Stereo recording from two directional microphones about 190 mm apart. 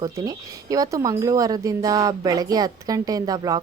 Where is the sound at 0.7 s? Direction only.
15° right (ahead or behind).